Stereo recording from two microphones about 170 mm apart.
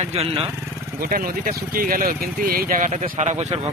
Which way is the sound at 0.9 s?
60° right (ahead or behind).